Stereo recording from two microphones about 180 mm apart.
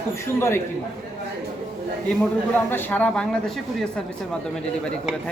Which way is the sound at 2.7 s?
10° left (ahead or behind).